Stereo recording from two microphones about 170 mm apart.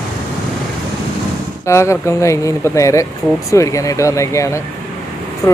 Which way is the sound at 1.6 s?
15° left (ahead or behind).